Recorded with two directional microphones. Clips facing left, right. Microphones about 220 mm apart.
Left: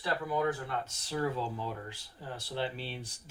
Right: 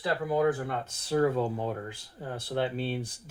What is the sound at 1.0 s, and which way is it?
Speech, 55° right (ahead or behind).